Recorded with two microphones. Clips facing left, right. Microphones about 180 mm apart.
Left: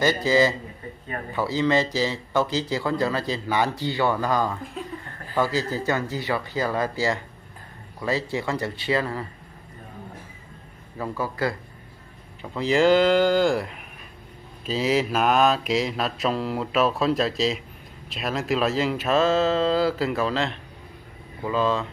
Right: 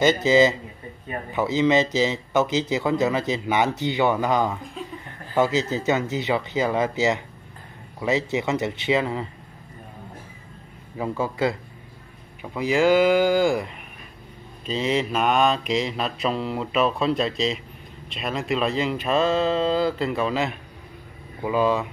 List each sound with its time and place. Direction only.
0.0 s speech: 20° right (ahead or behind)
11.0 s speech: 25° right (ahead or behind)
12.4 s speech: 10° right (ahead or behind)
14.7 s mantra: 5° left (ahead or behind)
20.2 s speech: 10° right (ahead or behind)